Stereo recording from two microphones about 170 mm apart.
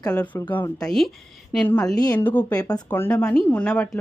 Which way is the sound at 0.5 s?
5° left (ahead or behind).